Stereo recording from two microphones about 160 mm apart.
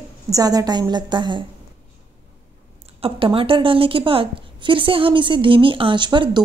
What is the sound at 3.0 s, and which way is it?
A woman's voice, 35° right (ahead or behind).